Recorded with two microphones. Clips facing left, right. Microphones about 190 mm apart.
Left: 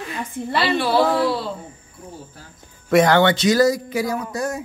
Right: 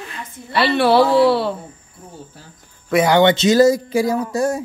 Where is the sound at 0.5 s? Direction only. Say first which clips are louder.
Right 5 dB; 65° right (ahead or behind).